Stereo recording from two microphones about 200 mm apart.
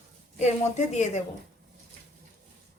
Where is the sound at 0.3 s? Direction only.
35° left (ahead or behind).